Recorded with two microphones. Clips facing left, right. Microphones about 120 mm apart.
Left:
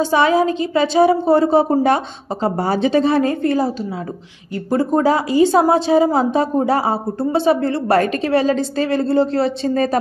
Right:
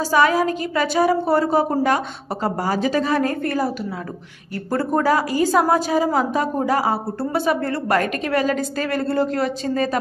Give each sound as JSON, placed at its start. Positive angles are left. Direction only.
{"t": 0.0, "sound": "a woman's voice", "side_deg": 25}